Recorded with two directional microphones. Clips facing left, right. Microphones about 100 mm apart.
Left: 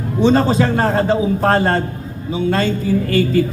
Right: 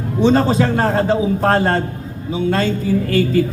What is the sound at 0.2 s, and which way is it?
A man's voice, 30° left (ahead or behind).